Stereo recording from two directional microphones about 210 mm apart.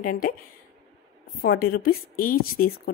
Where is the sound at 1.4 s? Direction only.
45° left (ahead or behind).